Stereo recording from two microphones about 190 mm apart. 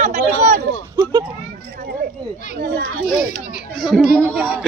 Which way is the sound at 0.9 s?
20° right (ahead or behind).